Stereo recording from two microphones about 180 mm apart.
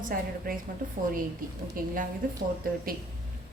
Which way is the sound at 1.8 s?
50° right (ahead or behind).